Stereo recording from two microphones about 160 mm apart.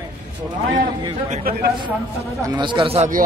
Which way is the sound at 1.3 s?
65° right (ahead or behind).